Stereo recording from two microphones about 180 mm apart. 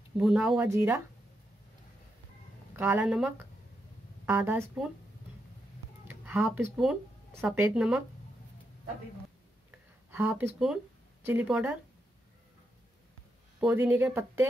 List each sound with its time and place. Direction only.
0.2 s speech: 5° right (ahead or behind)
0.7 s speech: 15° right (ahead or behind)
2.7 s speech: 10° right (ahead or behind)
6.0 s speech: 10° right (ahead or behind)
9.7 s a sound: 10° right (ahead or behind)
11.2 s speech: 5° right (ahead or behind)
13.6 s speech: 10° right (ahead or behind)